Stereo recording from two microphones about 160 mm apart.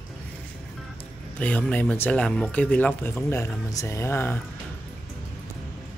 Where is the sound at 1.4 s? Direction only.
10° left (ahead or behind).